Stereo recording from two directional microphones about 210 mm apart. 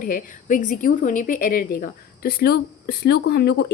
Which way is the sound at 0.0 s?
40° left (ahead or behind).